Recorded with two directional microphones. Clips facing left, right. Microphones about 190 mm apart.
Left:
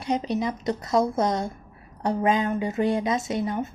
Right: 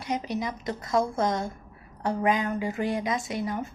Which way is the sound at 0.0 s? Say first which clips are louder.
Left 4 dB; 25° left (ahead or behind).